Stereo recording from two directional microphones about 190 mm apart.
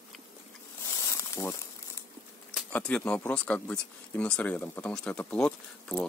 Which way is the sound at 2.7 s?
5° left (ahead or behind).